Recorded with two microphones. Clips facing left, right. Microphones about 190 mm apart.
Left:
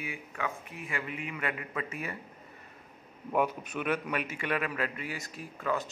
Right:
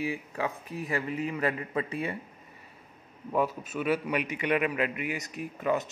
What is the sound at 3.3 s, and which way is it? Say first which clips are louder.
A man's voice: right 1 dB; centre (ahead or behind).